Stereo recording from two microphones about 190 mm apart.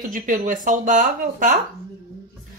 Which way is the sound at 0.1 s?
45° right (ahead or behind).